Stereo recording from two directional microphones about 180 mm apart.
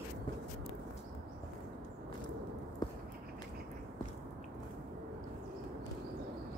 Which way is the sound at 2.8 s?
25° left (ahead or behind).